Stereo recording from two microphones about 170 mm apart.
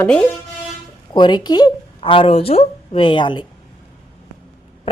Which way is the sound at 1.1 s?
25° left (ahead or behind).